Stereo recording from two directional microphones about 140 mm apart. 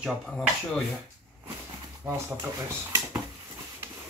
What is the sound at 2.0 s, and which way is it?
Speech, 20° right (ahead or behind).